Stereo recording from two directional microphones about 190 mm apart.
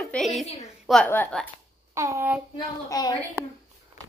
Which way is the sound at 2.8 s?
20° left (ahead or behind).